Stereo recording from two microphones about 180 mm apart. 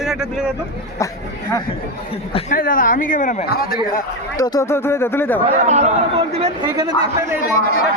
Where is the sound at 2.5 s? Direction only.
50° left (ahead or behind).